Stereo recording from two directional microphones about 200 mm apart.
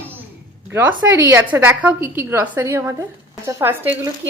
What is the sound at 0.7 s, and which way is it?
A woman's voice, 10° right (ahead or behind).